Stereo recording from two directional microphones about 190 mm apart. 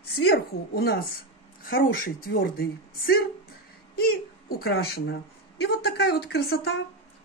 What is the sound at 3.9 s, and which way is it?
A woman's voice, 55° left (ahead or behind).